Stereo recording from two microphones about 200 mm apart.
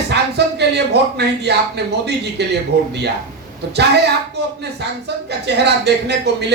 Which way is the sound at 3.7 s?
55° right (ahead or behind).